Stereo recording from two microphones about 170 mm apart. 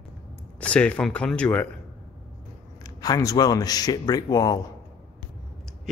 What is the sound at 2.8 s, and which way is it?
Speech, 20° left (ahead or behind).